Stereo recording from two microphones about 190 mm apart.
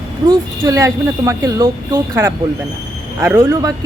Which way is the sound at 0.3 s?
15° right (ahead or behind).